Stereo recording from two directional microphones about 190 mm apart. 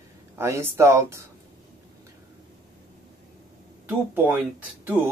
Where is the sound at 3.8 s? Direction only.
10° right (ahead or behind).